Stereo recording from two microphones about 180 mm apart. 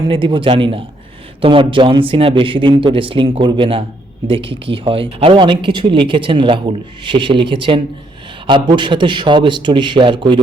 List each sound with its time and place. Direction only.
0.1 s speech: 30° right (ahead or behind)